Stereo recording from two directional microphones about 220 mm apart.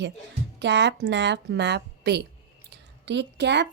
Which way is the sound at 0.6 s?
50° right (ahead or behind).